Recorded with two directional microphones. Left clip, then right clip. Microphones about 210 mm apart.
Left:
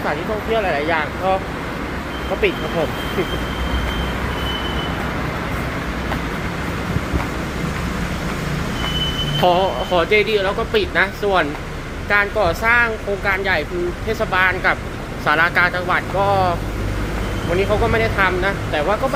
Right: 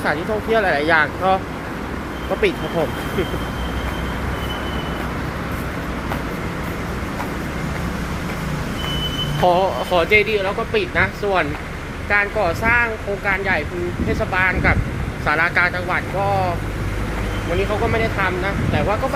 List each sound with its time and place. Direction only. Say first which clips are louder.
0.5 s speech: right 3 dB; 20° right (ahead or behind)
9.4 s speech: even; centre (ahead or behind)
17.9 s speech: left 3 dB; 10° left (ahead or behind)